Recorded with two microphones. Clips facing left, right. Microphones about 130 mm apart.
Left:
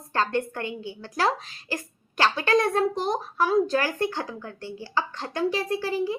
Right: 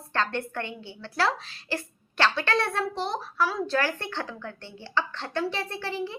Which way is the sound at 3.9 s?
10° left (ahead or behind).